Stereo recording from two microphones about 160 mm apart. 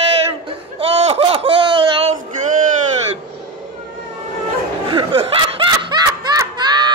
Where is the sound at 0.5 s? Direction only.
40° right (ahead or behind).